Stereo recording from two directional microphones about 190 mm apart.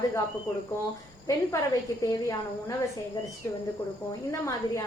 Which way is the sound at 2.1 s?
20° left (ahead or behind).